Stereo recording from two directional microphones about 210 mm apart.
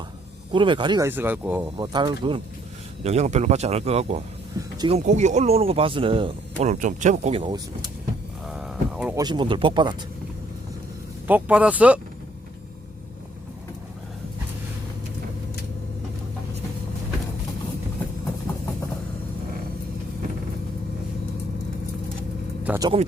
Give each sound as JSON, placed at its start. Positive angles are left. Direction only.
{"t": 0.5, "sound": "speech", "side_deg": -25}
{"t": 8.4, "sound": "a sound", "side_deg": -5}
{"t": 9.1, "sound": "speech", "side_deg": -20}
{"t": 11.3, "sound": "a man's voice", "side_deg": -5}
{"t": 22.6, "sound": "vehicle", "side_deg": -10}